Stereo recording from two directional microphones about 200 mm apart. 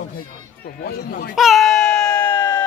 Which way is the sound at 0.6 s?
50° left (ahead or behind).